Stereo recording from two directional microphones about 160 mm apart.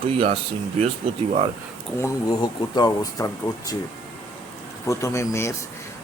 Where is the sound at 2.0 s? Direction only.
20° left (ahead or behind).